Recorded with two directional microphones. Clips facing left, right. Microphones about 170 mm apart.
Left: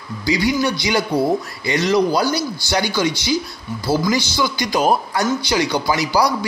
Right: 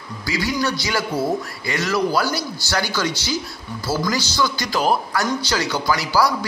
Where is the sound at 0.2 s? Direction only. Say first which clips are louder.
Left 5 dB; 20° left (ahead or behind).